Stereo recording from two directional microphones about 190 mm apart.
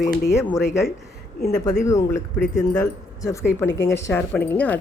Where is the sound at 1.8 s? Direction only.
15° left (ahead or behind).